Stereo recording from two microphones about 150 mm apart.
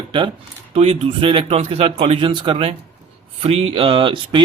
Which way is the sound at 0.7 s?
40° right (ahead or behind).